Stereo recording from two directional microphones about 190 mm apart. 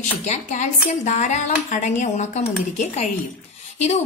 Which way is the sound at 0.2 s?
40° left (ahead or behind).